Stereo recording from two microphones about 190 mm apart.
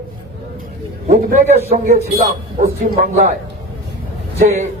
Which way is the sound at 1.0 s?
40° right (ahead or behind).